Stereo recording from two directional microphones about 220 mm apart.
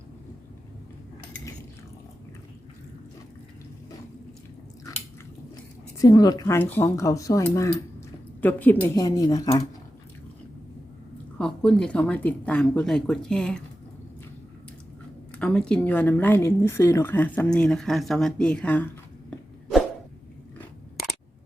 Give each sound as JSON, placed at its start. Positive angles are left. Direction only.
{"t": 6.0, "sound": "speech", "side_deg": 15}
{"t": 11.3, "sound": "speech", "side_deg": 5}
{"t": 15.3, "sound": "speech", "side_deg": 5}